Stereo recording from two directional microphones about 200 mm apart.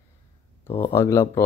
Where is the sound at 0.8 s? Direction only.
15° left (ahead or behind).